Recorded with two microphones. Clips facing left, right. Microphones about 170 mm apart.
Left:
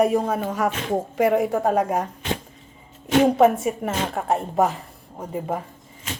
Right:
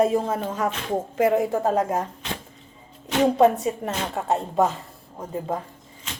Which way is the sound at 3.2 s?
20° left (ahead or behind).